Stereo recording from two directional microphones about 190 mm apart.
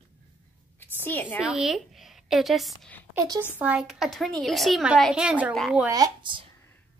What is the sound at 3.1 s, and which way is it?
Speech, 20° right (ahead or behind).